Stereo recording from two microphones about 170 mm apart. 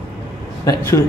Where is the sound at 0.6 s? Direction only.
20° left (ahead or behind).